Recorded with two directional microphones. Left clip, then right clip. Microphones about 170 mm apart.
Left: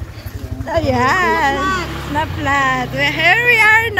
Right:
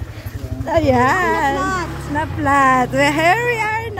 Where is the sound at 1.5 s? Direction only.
85° right.